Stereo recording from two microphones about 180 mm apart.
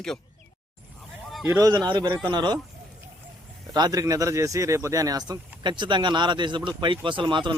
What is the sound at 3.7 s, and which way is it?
Speech, 20° right (ahead or behind).